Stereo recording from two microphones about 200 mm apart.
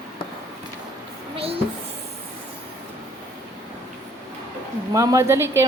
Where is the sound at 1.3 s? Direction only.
30° right (ahead or behind).